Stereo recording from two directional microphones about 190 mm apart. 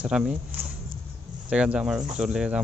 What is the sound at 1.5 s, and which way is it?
A man's voice, 5° right (ahead or behind).